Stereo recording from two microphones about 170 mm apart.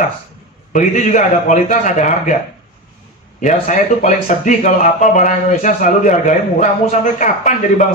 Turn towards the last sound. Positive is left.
turn(degrees=45)  # may be behind; listen again after turning